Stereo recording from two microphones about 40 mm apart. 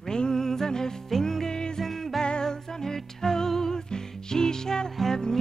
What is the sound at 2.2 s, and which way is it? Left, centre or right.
Music, left.